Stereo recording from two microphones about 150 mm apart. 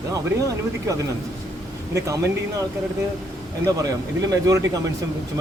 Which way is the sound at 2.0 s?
20° right (ahead or behind).